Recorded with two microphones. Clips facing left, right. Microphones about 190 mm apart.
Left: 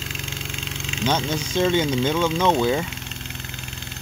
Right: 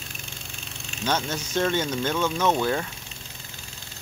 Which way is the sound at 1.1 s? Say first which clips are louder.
Left 3 dB; 10° left (ahead or behind).